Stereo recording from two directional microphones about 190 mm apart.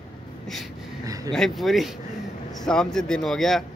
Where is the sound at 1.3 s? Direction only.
Centre (ahead or behind).